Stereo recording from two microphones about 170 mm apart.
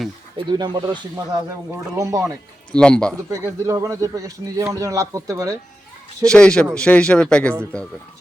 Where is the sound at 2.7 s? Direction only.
5° left (ahead or behind).